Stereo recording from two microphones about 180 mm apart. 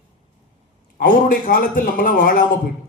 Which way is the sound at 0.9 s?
50° left (ahead or behind).